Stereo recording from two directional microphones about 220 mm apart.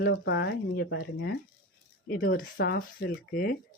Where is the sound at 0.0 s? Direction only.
50° left (ahead or behind).